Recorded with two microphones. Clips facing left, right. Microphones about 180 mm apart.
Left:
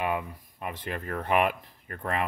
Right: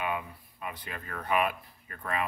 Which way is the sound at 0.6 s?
60° left (ahead or behind).